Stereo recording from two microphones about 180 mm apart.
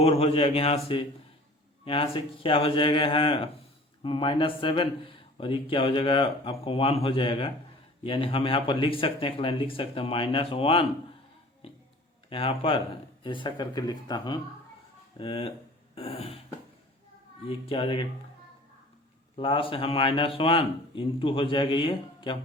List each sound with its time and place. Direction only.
0.0 s speech: 35° left (ahead or behind)
1.8 s speech: 30° left (ahead or behind)
11.6 s music: 30° left (ahead or behind)
12.3 s speech: 30° left (ahead or behind)
17.7 s speech: 30° left (ahead or behind)
19.4 s speech: 30° left (ahead or behind)